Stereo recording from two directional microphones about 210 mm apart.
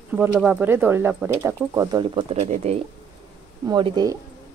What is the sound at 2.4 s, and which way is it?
Speech, 30° right (ahead or behind).